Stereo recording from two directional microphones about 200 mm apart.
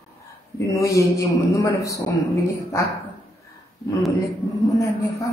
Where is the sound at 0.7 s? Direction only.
15° left (ahead or behind).